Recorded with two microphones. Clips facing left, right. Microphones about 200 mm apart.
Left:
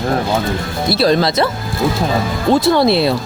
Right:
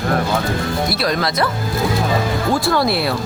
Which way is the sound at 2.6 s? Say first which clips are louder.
Left 5 dB; 25° left (ahead or behind).